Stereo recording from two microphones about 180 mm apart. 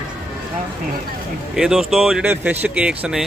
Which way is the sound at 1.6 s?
Centre (ahead or behind).